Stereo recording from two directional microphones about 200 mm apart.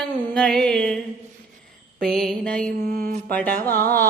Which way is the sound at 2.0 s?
5° left (ahead or behind).